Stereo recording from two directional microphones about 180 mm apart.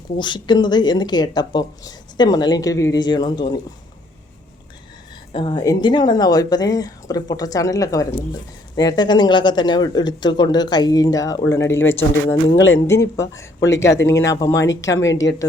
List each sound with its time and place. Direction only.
0.2 s speech: 25° left (ahead or behind)
5.3 s speech: 30° left (ahead or behind)
12.3 s speech: 90° left
12.9 s speech: 15° left (ahead or behind)